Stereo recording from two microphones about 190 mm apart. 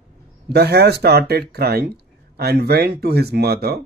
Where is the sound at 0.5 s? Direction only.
60° right (ahead or behind).